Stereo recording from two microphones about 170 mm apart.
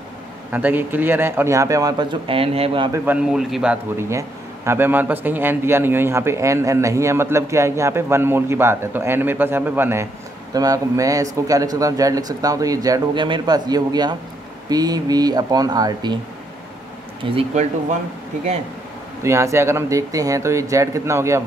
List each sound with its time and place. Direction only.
0.5 s speech: 10° right (ahead or behind); by 2.9 s 30° right (ahead or behind)
2.9 s a man's voice: 10° right (ahead or behind); by 16.2 s 25° right (ahead or behind)
17.2 s speech: 40° right (ahead or behind)
19.2 s a man's voice: 15° right (ahead or behind)